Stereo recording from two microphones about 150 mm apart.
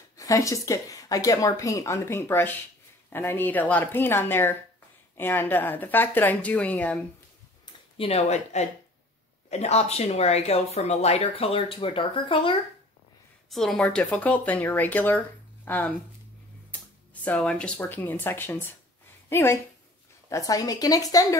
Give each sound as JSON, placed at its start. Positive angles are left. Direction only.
{"t": 0.2, "sound": "speech", "side_deg": 20}
{"t": 8.0, "sound": "speech", "side_deg": 45}
{"t": 13.5, "sound": "speech", "side_deg": 0}
{"t": 17.1, "sound": "a woman's voice", "side_deg": 10}